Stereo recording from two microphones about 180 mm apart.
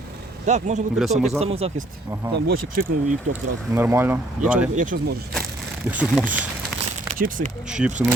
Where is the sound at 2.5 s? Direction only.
50° right (ahead or behind).